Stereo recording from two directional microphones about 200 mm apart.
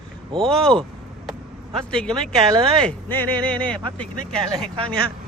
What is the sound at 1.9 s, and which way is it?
Speech, 5° left (ahead or behind).